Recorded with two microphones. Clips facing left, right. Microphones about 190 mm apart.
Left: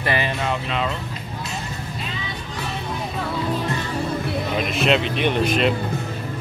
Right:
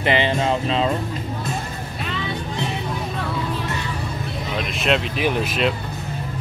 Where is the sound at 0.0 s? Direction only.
25° right (ahead or behind).